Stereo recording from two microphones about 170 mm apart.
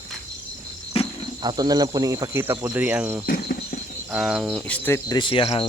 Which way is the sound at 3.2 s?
60° left (ahead or behind).